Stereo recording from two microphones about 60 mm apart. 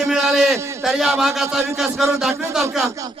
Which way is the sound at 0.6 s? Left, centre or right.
Right.